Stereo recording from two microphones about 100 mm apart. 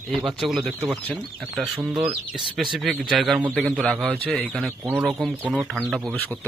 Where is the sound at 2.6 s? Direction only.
Centre (ahead or behind).